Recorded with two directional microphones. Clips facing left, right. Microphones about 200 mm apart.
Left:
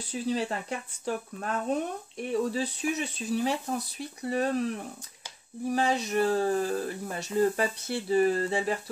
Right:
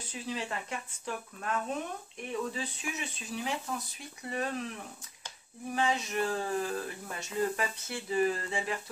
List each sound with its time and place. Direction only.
0.1 s speech: 35° left (ahead or behind)
5.7 s speech: 35° left (ahead or behind)